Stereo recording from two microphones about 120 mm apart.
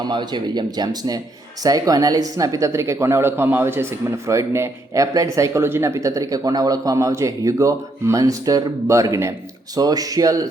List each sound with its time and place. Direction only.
0.1 s speech: 40° right (ahead or behind)